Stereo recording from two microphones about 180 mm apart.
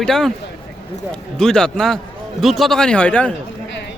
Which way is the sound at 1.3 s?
5° left (ahead or behind).